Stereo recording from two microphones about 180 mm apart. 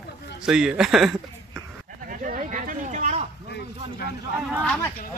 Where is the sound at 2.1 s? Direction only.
45° right (ahead or behind).